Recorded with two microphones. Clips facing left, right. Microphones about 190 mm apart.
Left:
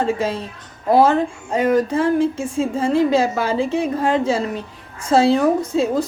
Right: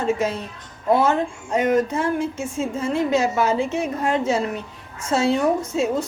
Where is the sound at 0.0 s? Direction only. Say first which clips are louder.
Left 2 dB; 30° left (ahead or behind).